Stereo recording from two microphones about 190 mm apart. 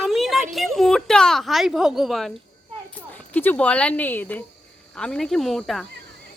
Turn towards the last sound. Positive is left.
turn(degrees=0)  # may be behind; listen again after turning